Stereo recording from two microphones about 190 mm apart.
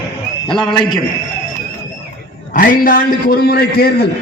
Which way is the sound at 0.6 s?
25° left (ahead or behind).